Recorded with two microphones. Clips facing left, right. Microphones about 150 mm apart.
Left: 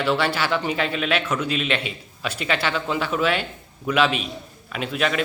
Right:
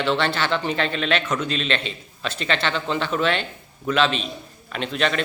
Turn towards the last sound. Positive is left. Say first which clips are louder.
# even
turn(degrees=5)  # may be behind; listen again after turning